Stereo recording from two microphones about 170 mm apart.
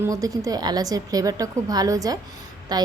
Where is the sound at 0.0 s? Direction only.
20° right (ahead or behind).